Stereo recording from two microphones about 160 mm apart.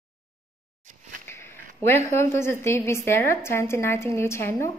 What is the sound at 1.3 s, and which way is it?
A woman's voice, 15° left (ahead or behind).